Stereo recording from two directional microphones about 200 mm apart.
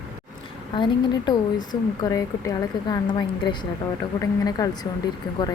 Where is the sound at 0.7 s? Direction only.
20° left (ahead or behind).